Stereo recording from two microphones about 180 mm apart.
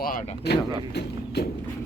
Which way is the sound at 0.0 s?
50° left (ahead or behind).